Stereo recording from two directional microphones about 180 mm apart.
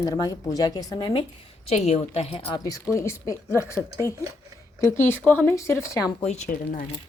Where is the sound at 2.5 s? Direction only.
20° left (ahead or behind).